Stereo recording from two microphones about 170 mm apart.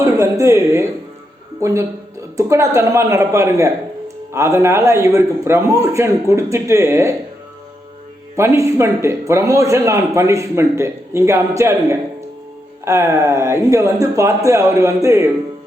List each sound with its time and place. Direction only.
0.0 s a man's voice: 15° right (ahead or behind)
8.4 s a man's voice: 15° right (ahead or behind)